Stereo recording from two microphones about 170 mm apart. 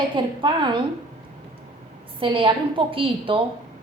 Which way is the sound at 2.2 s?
30° right (ahead or behind).